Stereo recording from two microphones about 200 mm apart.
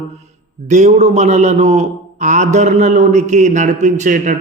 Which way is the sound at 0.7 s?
35° right (ahead or behind).